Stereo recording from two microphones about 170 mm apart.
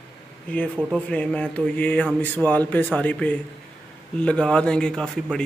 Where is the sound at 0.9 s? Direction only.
5° left (ahead or behind).